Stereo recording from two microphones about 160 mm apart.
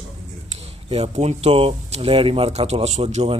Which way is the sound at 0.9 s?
40° right (ahead or behind).